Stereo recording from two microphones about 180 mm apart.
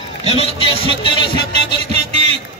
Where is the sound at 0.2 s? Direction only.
35° left (ahead or behind).